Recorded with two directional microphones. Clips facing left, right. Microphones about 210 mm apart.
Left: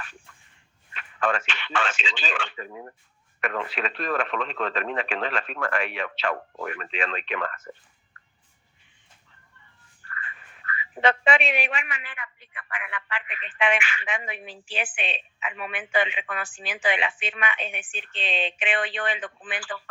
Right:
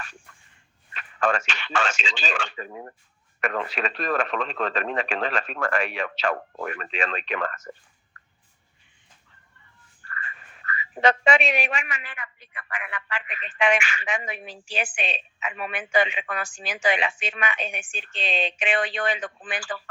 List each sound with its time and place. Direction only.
0.9 s speech: 45° right (ahead or behind)
10.1 s speech: 45° right (ahead or behind)